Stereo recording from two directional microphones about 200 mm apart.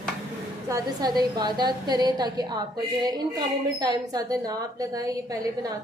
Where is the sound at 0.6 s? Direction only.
15° right (ahead or behind).